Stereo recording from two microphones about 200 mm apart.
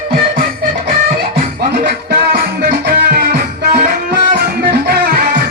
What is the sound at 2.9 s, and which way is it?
Music, 50° right (ahead or behind).